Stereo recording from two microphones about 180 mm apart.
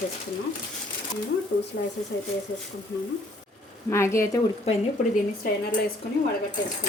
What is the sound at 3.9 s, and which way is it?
Speech, 15° left (ahead or behind).